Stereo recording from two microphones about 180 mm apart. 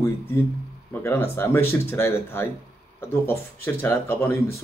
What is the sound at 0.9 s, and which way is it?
Speech, 15° left (ahead or behind).